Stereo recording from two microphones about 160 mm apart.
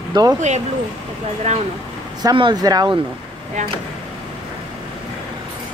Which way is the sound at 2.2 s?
30° right (ahead or behind).